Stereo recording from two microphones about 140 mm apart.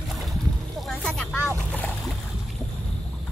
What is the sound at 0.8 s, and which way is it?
Vehicle, centre (ahead or behind).